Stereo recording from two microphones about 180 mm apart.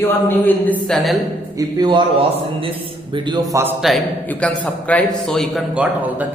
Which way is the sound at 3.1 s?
25° right (ahead or behind).